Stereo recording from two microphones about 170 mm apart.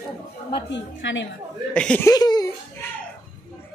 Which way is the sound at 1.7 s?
5° left (ahead or behind).